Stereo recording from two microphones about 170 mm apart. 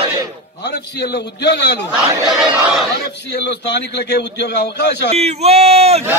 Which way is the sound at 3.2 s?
80° left.